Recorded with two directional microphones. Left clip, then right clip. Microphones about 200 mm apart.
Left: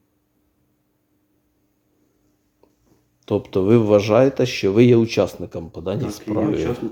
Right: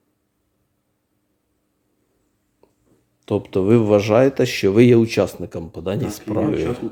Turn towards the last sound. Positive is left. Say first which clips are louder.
# even
turn(degrees=0)  # may be behind; listen again after turning